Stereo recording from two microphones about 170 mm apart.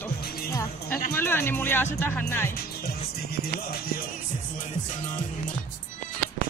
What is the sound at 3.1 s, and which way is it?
Speech, 65° left (ahead or behind).